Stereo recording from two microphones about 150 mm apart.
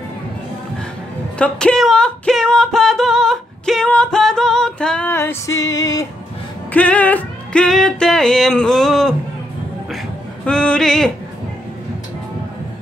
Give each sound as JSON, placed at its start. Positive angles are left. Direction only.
{"t": 1.4, "sound": "music", "side_deg": 5}
{"t": 5.1, "sound": "music", "side_deg": 15}
{"t": 6.7, "sound": "music", "side_deg": 10}
{"t": 10.4, "sound": "music", "side_deg": 5}